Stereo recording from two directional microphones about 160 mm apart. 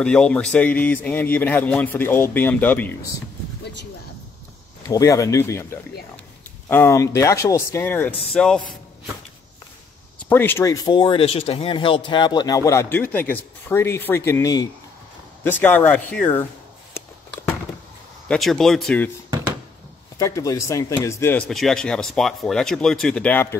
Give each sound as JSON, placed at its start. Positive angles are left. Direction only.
{"t": 0.0, "sound": "speech", "side_deg": 5}
{"t": 4.8, "sound": "speech", "side_deg": 20}
{"t": 8.3, "sound": "speech", "side_deg": 5}
{"t": 10.3, "sound": "speech", "side_deg": 15}
{"t": 15.4, "sound": "speech", "side_deg": 10}
{"t": 18.3, "sound": "speech", "side_deg": 0}
{"t": 20.2, "sound": "speech", "side_deg": 20}
{"t": 21.5, "sound": "speech", "side_deg": 0}